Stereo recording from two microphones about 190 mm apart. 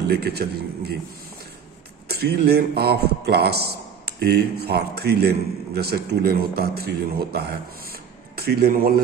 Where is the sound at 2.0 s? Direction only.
55° right (ahead or behind).